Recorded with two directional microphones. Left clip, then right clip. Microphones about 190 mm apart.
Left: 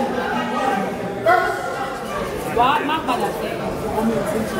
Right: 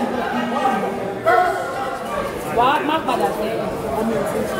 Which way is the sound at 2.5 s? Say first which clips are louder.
Right 1 dB; 55° right (ahead or behind).